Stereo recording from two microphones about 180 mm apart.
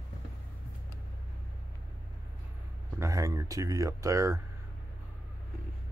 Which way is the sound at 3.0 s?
20° right (ahead or behind).